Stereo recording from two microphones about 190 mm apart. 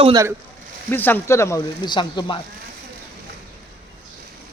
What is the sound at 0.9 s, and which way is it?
Speech, 10° left (ahead or behind).